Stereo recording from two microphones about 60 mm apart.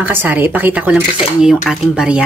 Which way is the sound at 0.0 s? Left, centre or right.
Right.